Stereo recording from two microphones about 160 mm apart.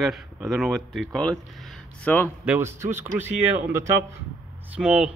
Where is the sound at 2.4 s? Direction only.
15° right (ahead or behind).